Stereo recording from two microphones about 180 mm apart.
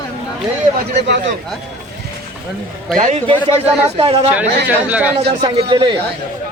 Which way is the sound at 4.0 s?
30° right (ahead or behind).